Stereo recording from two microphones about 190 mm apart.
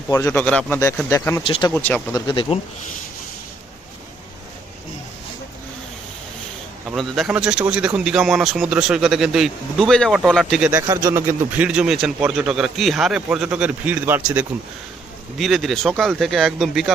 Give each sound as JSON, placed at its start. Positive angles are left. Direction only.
{"t": 0.1, "sound": "speech", "side_deg": 15}
{"t": 2.2, "sound": "speech", "side_deg": 25}
{"t": 6.8, "sound": "speech", "side_deg": 0}